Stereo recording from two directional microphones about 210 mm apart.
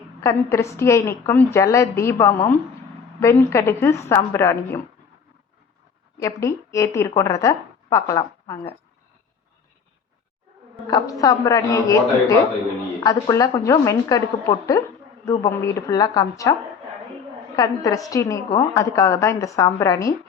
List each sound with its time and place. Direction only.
0.2 s a woman's voice: 15° left (ahead or behind)
6.1 s a woman's voice: 15° left (ahead or behind)
10.8 s a woman's voice: 15° left (ahead or behind)
17.8 s a woman's voice: 15° left (ahead or behind)